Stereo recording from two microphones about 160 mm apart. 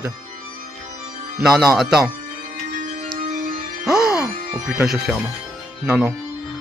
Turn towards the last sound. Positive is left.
turn(degrees=-10)  # may be behind; listen again after turning